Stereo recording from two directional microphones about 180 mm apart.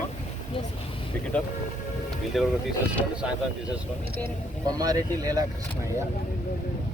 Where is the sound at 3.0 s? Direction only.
15° left (ahead or behind).